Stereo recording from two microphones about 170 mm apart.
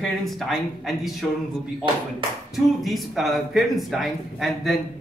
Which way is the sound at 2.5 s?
Centre (ahead or behind).